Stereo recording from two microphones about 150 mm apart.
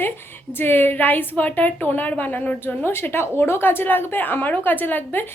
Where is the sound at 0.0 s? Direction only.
15° left (ahead or behind).